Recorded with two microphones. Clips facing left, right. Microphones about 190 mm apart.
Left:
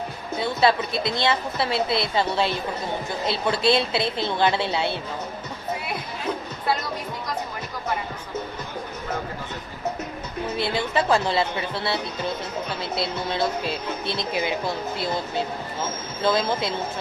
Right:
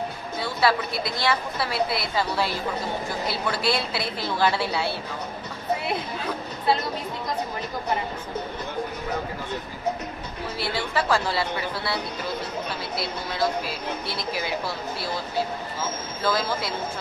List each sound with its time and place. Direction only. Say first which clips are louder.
0.4 s speech: left 3 dB; 25° left (ahead or behind)
10.6 s speech: left 2 dB; 20° left (ahead or behind)